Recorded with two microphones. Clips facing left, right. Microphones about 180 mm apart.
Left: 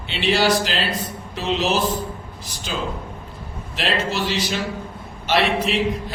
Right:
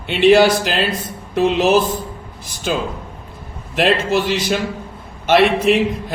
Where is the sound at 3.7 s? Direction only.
50° right (ahead or behind).